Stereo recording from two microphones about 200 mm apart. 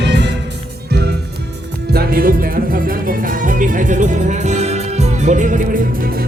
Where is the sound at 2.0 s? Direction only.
45° right (ahead or behind).